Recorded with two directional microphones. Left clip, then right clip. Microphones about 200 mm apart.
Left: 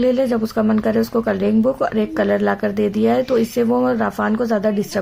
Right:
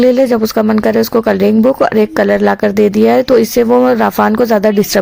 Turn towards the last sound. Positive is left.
turn(degrees=-40)  # may be behind; listen again after turning